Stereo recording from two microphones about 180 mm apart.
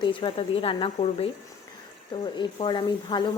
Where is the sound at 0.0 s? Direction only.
25° left (ahead or behind).